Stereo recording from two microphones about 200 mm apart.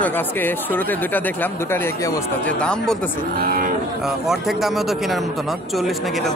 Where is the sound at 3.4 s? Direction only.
45° right (ahead or behind).